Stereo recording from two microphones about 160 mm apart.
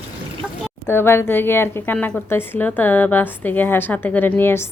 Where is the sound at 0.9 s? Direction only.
15° left (ahead or behind).